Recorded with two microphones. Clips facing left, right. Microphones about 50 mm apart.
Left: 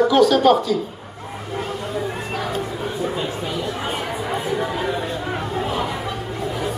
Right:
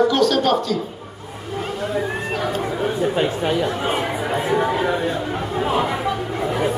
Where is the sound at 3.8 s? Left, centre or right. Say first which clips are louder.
Right 3 dB; right.